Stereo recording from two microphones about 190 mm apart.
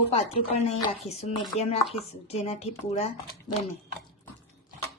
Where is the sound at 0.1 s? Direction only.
30° left (ahead or behind).